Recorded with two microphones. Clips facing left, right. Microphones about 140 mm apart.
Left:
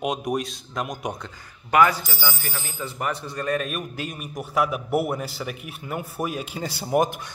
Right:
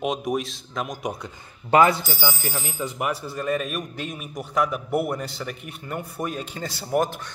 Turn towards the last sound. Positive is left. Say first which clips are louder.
# left 2 dB
turn(degrees=15)  # may be behind; listen again after turning